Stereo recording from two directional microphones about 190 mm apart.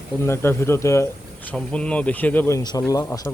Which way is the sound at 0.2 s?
15° left (ahead or behind).